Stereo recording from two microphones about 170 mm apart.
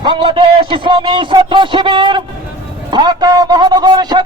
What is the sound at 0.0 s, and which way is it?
A man's voice, 30° right (ahead or behind).